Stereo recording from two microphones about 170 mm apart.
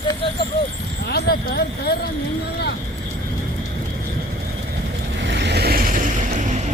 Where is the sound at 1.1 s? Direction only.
75° left (ahead or behind).